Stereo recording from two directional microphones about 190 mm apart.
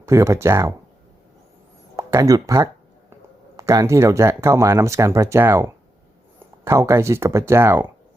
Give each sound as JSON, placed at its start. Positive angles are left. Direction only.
{"t": 0.1, "sound": "speech", "side_deg": -15}
{"t": 2.0, "sound": "speech", "side_deg": -15}